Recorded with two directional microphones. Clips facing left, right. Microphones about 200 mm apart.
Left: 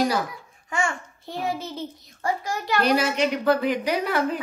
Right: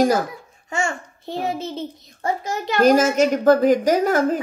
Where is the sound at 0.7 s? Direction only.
25° right (ahead or behind).